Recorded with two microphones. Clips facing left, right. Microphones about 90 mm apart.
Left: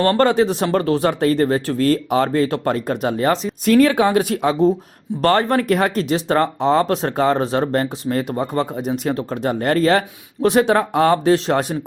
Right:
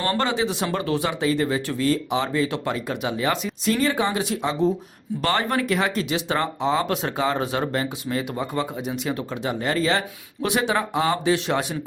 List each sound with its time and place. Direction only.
0.0 s speech: 45° left (ahead or behind)
3.7 s speech: 60° left (ahead or behind); by 11.8 s 45° left (ahead or behind)